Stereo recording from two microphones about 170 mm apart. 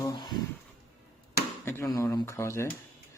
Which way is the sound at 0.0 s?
25° left (ahead or behind).